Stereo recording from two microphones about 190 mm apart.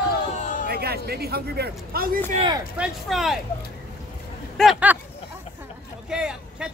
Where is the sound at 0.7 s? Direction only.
55° right (ahead or behind).